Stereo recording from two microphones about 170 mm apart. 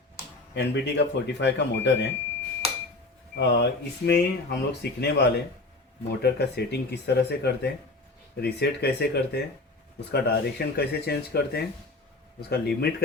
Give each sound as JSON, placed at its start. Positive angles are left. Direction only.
{"t": 0.5, "sound": "speech", "side_deg": 90}
{"t": 3.3, "sound": "speech", "side_deg": 85}